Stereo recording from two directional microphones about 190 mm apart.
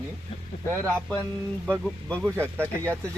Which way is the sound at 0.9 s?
5° left (ahead or behind).